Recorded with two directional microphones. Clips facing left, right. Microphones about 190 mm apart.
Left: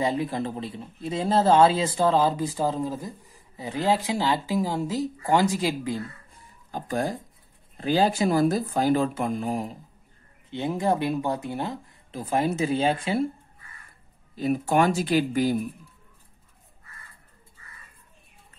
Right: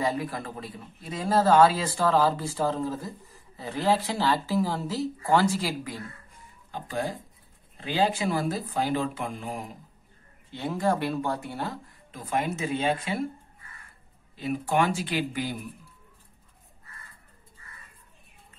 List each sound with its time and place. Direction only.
0.0 s speech: 25° left (ahead or behind)
6.7 s speech: 45° left (ahead or behind)
10.5 s speech: 20° left (ahead or behind)
12.1 s speech: 30° left (ahead or behind)
14.3 s speech: 40° left (ahead or behind)